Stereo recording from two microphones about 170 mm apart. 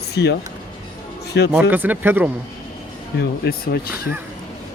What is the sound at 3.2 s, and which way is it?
Speech, 65° left (ahead or behind).